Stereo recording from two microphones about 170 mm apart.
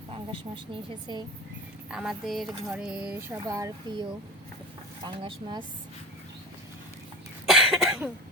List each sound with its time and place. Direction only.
0.1 s speech: 30° right (ahead or behind)
1.9 s speech: 5° right (ahead or behind); by 4.0 s 20° right (ahead or behind)
5.0 s speech: 30° right (ahead or behind)
7.4 s cough: centre (ahead or behind)